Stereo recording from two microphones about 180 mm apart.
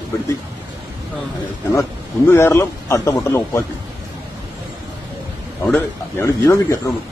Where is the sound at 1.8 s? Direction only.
15° left (ahead or behind).